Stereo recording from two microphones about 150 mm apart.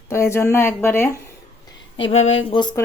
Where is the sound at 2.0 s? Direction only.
40° left (ahead or behind).